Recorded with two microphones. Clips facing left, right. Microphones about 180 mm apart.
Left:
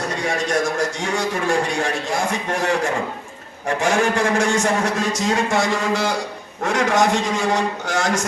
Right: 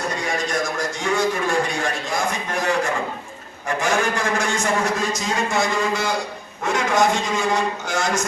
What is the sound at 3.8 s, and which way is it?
A man's voice, 75° left (ahead or behind).